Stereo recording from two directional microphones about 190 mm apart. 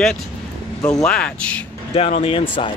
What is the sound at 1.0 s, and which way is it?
Speech, 5° left (ahead or behind).